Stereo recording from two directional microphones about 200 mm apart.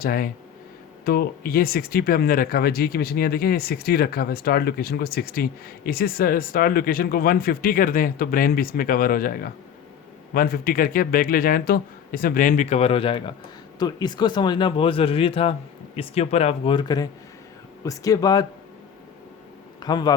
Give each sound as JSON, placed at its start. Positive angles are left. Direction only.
{"t": 0.0, "sound": "speech", "side_deg": 45}
{"t": 19.8, "sound": "speech", "side_deg": 20}